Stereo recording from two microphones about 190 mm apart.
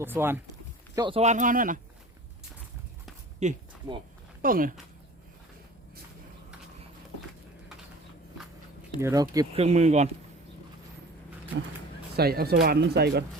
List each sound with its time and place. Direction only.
0.0 s speech: 10° right (ahead or behind)
0.9 s speech: 25° right (ahead or behind)
1.2 s speech: 40° right (ahead or behind)
3.4 s speech: 35° right (ahead or behind)
4.4 s speech: 50° right (ahead or behind)
9.0 s speech: 15° right (ahead or behind)
9.6 s speech: 35° right (ahead or behind)
12.1 s speech: 55° right (ahead or behind)